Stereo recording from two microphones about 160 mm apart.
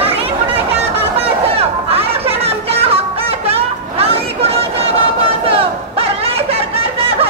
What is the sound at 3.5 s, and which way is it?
Chatter, 40° right (ahead or behind).